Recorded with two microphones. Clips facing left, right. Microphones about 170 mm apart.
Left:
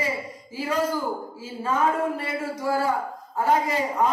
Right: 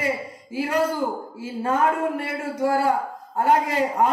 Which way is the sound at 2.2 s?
65° right (ahead or behind).